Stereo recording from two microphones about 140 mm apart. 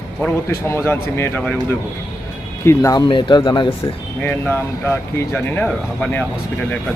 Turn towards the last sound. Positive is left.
turn(degrees=10)  # may be behind; listen again after turning